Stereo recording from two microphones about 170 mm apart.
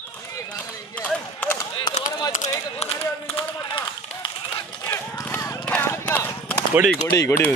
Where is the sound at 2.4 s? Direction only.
45° left (ahead or behind).